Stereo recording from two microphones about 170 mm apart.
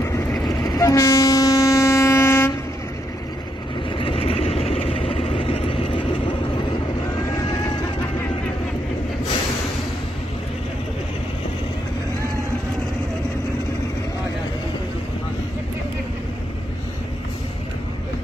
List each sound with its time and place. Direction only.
0.5 s train: 20° left (ahead or behind)
3.9 s vehicle: 35° left (ahead or behind)